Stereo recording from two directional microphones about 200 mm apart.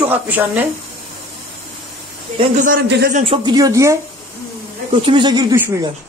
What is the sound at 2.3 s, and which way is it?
Speech, 35° right (ahead or behind).